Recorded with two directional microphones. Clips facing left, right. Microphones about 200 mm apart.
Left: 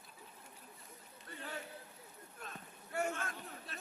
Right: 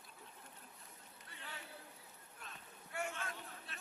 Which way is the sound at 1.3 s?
45° left (ahead or behind).